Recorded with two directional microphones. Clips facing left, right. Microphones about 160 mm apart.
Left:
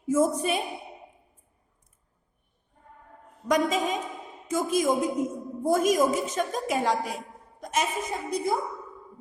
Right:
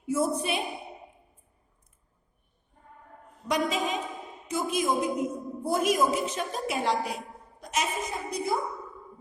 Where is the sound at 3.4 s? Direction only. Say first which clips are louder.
Left 3 dB; 45° left (ahead or behind).